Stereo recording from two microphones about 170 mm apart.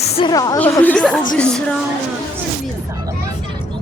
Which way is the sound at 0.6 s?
10° left (ahead or behind).